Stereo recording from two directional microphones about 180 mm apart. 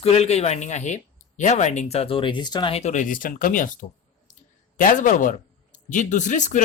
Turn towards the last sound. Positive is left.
turn(degrees=45)  # may be behind; listen again after turning